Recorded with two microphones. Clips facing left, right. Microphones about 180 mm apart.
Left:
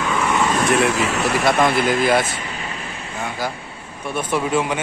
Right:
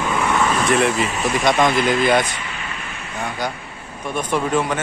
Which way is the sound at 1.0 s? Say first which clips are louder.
Left 1 dB; 80° left.